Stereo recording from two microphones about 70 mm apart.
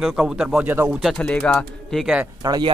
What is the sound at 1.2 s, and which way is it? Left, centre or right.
Speech, centre.